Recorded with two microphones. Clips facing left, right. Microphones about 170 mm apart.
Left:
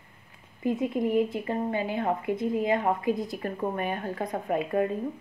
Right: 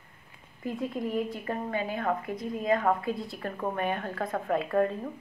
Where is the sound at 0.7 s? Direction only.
20° left (ahead or behind).